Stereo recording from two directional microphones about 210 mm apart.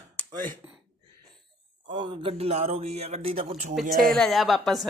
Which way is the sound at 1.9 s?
25° right (ahead or behind).